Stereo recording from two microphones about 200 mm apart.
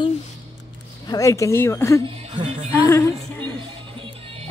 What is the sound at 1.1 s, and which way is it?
Speech, 15° left (ahead or behind).